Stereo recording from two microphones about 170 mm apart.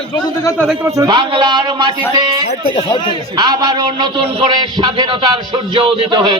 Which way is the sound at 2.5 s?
35° left (ahead or behind).